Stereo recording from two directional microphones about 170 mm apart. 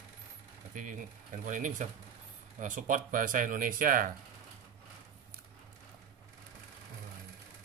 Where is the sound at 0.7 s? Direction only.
50° right (ahead or behind).